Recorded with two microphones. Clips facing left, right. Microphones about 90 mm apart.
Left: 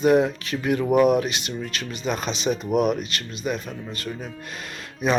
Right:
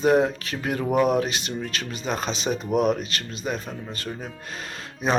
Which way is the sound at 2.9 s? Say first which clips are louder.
Even; 40° right (ahead or behind).